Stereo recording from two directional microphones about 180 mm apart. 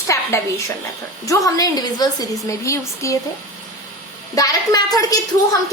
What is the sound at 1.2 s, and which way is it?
A woman's voice, 20° left (ahead or behind).